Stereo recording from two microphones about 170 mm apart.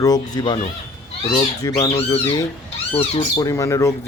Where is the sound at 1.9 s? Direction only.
35° left (ahead or behind).